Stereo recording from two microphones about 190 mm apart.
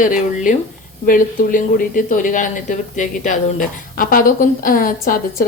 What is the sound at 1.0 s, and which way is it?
A woman's voice, 45° left (ahead or behind).